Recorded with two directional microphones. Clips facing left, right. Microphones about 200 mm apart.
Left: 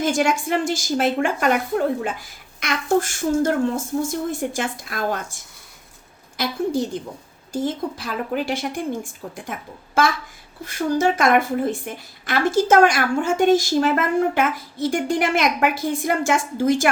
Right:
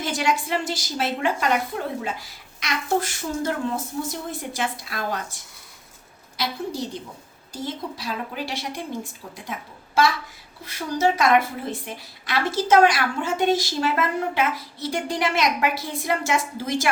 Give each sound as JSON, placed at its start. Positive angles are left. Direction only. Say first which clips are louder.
{"t": 0.0, "sound": "a woman's voice", "louder": "left 5 dB", "side_deg": 50}